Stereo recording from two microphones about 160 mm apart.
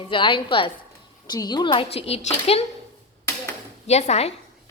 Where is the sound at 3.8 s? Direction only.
45° left (ahead or behind).